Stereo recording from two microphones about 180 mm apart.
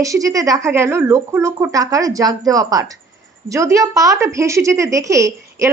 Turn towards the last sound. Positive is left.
turn(degrees=-15)  # may be behind; listen again after turning